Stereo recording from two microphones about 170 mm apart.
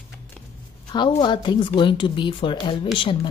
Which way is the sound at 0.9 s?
25° left (ahead or behind).